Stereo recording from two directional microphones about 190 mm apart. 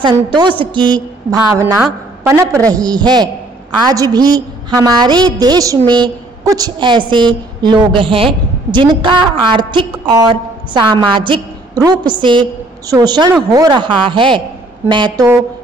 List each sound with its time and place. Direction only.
0.0 s a woman's voice: 25° right (ahead or behind)